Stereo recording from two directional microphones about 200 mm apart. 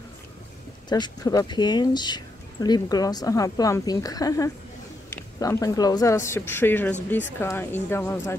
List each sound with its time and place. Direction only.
0.8 s speech: 20° left (ahead or behind)